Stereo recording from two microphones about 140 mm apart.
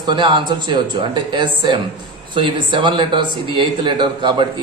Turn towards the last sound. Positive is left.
turn(degrees=-35)  # may be behind; listen again after turning